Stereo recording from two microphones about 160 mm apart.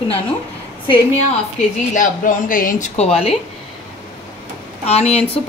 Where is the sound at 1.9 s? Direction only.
55° left (ahead or behind).